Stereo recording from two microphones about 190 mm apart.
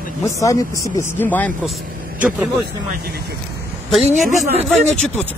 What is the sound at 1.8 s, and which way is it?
Vehicle, 50° right (ahead or behind).